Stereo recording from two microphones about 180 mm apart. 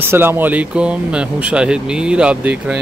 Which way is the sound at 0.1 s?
10° right (ahead or behind).